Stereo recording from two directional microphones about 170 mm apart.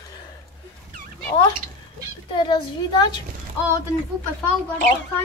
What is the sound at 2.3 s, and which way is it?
Speech, 25° left (ahead or behind).